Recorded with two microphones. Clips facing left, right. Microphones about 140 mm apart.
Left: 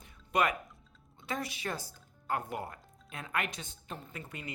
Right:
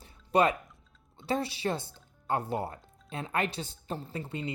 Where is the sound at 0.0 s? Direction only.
30° right (ahead or behind).